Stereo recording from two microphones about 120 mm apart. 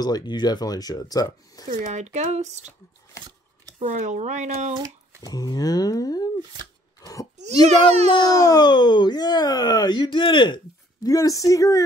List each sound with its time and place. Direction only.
0.0 s speech: 35° left (ahead or behind)
1.9 s speech: 75° right (ahead or behind)
3.8 s speech: 85° right
4.7 s a sound: 30° right (ahead or behind)
5.3 s speech: 30° left (ahead or behind)
7.0 s wail: 25° left (ahead or behind)
7.6 s a child's voice: 65° right (ahead or behind)
8.4 s speech: 30° left (ahead or behind)
11.1 s speech: 30° left (ahead or behind)